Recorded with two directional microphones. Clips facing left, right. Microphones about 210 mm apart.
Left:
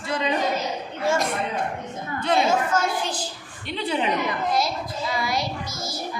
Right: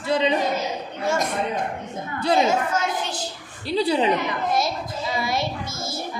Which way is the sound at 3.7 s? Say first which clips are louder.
Right 5 dB; 35° right (ahead or behind).